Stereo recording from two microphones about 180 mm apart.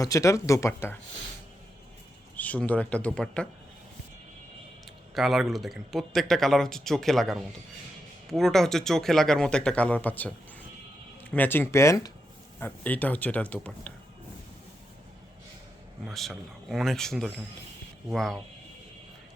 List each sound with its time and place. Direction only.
0.0 s speech: 20° left (ahead or behind)
2.3 s speech: 10° left (ahead or behind)
5.1 s speech: centre (ahead or behind)
16.0 s speech: centre (ahead or behind)